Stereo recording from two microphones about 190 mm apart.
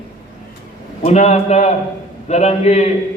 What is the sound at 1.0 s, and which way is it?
A man's voice, 35° left (ahead or behind).